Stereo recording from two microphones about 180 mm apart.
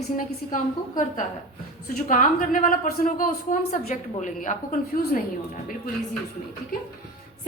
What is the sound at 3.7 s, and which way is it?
A man's voice, 40° left (ahead or behind).